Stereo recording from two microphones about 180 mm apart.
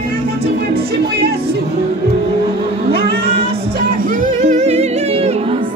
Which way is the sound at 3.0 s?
65° right (ahead or behind).